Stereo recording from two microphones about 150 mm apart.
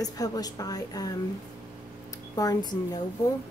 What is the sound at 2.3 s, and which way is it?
Speech, 25° left (ahead or behind).